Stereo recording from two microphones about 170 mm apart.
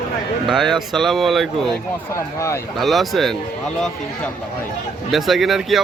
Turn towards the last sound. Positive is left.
turn(degrees=0)  # may be behind; listen again after turning